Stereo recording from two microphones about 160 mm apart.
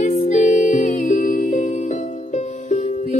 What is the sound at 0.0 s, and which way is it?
Music, 45° left (ahead or behind).